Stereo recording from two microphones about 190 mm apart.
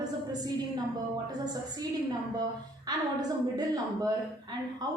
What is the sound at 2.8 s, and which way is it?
A woman's voice, 20° right (ahead or behind).